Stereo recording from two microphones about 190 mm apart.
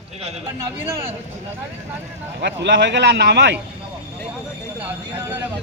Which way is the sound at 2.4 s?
65° right (ahead or behind).